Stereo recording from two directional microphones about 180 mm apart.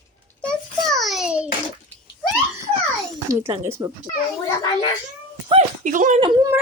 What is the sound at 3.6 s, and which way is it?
Speech, 15° right (ahead or behind).